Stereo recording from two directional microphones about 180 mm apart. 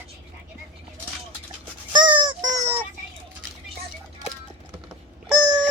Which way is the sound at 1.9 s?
25° right (ahead or behind).